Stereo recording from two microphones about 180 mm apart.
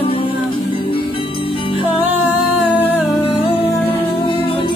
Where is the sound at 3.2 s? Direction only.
30° left (ahead or behind).